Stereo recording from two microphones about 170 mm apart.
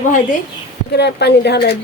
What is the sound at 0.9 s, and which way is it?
Speech, 80° left.